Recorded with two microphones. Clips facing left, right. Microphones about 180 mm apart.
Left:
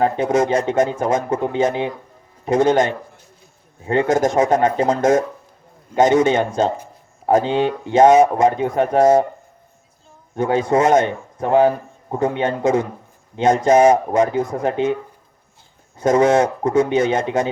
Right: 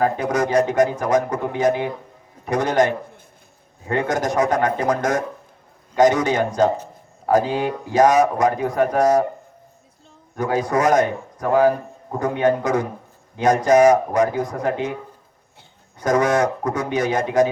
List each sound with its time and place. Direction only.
0.0 s a man's voice: 25° left (ahead or behind)
10.3 s a man's voice: 25° left (ahead or behind)
16.0 s a man's voice: 25° left (ahead or behind)